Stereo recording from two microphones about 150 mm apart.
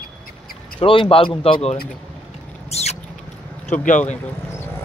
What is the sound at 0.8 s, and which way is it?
Speech, 35° left (ahead or behind).